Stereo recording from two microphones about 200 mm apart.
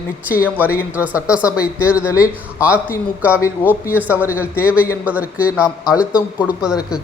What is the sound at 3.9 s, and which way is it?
A man's voice, 10° right (ahead or behind).